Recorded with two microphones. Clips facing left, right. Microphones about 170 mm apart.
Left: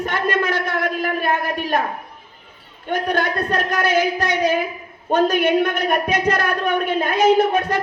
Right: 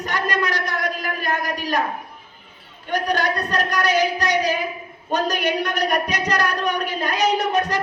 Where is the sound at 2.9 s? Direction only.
55° left (ahead or behind).